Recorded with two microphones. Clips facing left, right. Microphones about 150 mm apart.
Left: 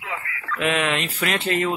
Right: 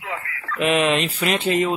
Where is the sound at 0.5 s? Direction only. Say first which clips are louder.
Right 4 dB; 25° right (ahead or behind).